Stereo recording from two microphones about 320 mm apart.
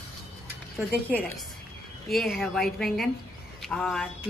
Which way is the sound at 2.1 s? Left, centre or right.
Centre.